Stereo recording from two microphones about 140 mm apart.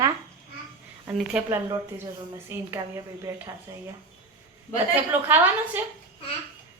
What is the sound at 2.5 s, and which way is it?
Speech, 15° right (ahead or behind).